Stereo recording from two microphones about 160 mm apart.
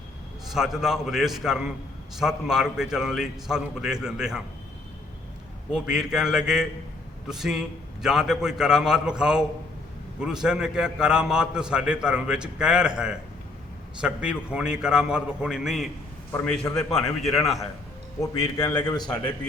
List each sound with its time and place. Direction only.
0.5 s a man's voice: centre (ahead or behind)
5.7 s a man's voice: 5° right (ahead or behind)
16.3 s a man's voice: 10° left (ahead or behind)
18.2 s a man's voice: 20° left (ahead or behind)